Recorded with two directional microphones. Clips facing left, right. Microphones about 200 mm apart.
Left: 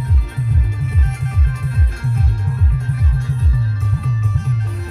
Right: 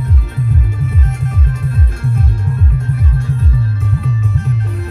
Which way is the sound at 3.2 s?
60° right (ahead or behind).